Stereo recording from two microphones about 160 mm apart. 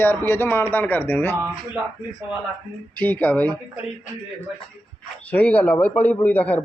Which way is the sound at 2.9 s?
10° left (ahead or behind).